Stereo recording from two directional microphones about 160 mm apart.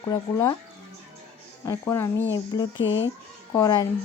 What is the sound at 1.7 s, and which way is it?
A woman's voice, 15° left (ahead or behind).